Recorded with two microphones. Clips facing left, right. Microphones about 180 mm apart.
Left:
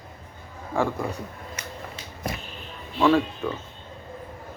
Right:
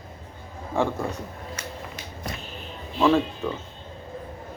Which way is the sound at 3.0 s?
10° right (ahead or behind).